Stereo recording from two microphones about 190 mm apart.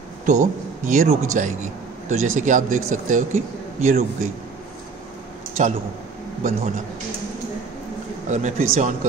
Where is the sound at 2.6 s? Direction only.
90° right.